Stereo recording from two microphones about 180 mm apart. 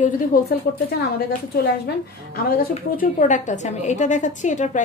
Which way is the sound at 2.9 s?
45° left (ahead or behind).